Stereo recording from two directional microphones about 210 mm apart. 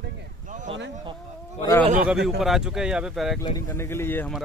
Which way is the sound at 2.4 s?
Centre (ahead or behind).